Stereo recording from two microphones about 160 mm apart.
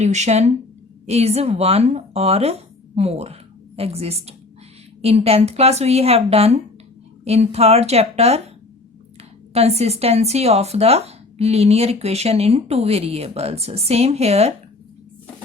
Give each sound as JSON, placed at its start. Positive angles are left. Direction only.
{"t": 0.0, "sound": "speech", "side_deg": -45}
{"t": 9.5, "sound": "speech", "side_deg": -40}